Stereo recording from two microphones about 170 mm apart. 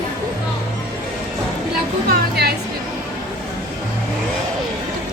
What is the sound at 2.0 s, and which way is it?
Speech, 70° right (ahead or behind).